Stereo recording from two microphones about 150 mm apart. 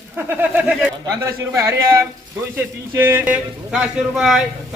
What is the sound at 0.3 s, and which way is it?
A man's voice, 10° right (ahead or behind).